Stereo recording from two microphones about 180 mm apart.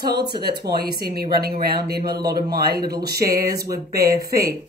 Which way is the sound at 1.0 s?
55° right (ahead or behind).